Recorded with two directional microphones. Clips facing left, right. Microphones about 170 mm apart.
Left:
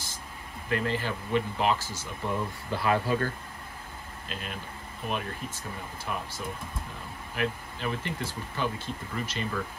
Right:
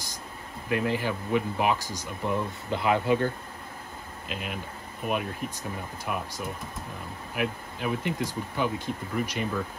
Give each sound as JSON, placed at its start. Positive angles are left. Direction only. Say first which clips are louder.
{"t": 0.7, "sound": "speech", "louder": "right 2 dB", "side_deg": -10}
{"t": 4.3, "sound": "speech", "louder": "right 4 dB", "side_deg": -10}